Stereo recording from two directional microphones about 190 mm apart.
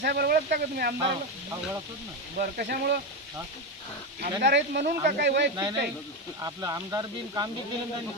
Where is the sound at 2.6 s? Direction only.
55° right (ahead or behind).